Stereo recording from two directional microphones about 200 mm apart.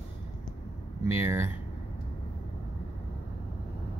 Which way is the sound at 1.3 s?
15° right (ahead or behind).